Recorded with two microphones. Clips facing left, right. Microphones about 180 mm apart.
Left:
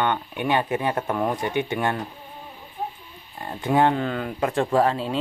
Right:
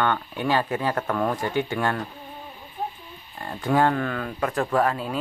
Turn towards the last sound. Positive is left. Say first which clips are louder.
# left 2 dB
turn(degrees=25)  # may be behind; listen again after turning